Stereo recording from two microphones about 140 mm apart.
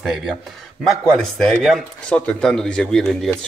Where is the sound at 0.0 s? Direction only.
Centre (ahead or behind).